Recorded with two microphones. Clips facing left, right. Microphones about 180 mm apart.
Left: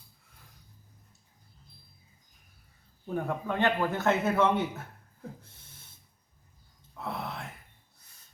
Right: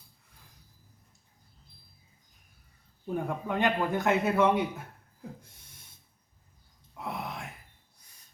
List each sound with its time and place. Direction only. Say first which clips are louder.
3.2 s a man's voice: left 1 dB; 15° right (ahead or behind)
6.9 s whispering: even; 15° right (ahead or behind)